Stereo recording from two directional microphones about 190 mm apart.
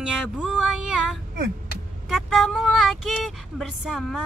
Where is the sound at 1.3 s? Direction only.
55° right (ahead or behind).